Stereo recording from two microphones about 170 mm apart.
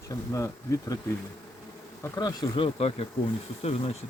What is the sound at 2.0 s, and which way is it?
Speech, 20° left (ahead or behind).